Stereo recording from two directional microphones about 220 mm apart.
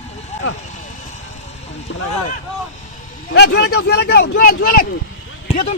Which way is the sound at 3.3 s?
50° left (ahead or behind).